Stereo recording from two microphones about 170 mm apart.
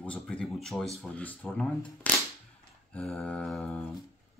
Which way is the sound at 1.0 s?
5° left (ahead or behind).